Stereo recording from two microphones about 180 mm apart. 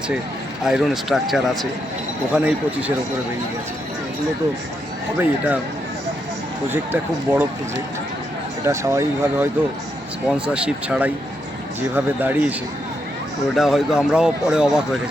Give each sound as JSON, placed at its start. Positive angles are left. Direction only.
{"t": 0.6, "sound": "speech", "side_deg": 0}
{"t": 5.1, "sound": "speech", "side_deg": -10}
{"t": 6.7, "sound": "speech", "side_deg": -10}
{"t": 8.6, "sound": "speech", "side_deg": -15}
{"t": 10.2, "sound": "speech", "side_deg": -5}
{"t": 13.6, "sound": "speech", "side_deg": 0}